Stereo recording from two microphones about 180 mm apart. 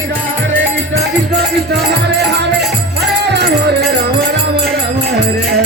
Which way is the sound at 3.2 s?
70° right (ahead or behind).